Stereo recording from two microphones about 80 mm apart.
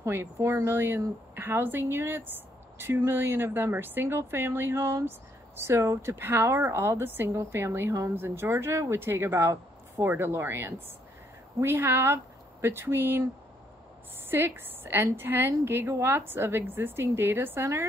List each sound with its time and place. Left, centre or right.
0.0 s a woman's voice: right
14.3 s a woman's voice: right